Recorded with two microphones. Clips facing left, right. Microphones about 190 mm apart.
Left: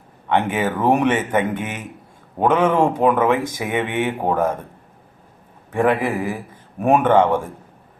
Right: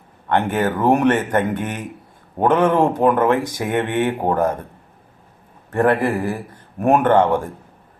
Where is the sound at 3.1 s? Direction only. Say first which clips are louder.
Right 1 dB; 10° left (ahead or behind).